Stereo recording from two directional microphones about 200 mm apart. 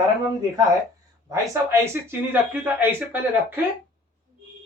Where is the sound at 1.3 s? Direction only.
15° right (ahead or behind).